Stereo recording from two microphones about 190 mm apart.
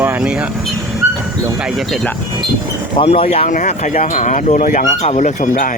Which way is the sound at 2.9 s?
30° left (ahead or behind).